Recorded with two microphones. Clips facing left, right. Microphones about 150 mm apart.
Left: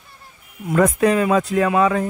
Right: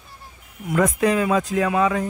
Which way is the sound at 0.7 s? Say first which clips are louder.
Left 3 dB; 60° left (ahead or behind).